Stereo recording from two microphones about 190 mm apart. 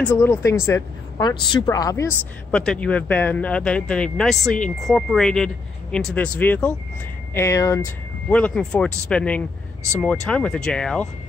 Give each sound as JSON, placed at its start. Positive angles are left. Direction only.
{"t": 0.0, "sound": "speech", "side_deg": 15}
{"t": 2.5, "sound": "speech", "side_deg": 5}